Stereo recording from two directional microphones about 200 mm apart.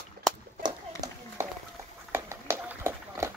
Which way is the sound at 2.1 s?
10° right (ahead or behind).